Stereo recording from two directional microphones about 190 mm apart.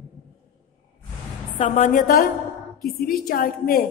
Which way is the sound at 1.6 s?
40° left (ahead or behind).